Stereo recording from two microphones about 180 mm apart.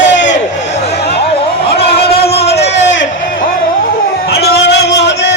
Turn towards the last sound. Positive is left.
turn(degrees=70)  # may be behind; listen again after turning